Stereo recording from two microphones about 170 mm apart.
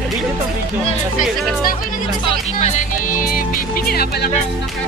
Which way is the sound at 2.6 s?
45° left (ahead or behind).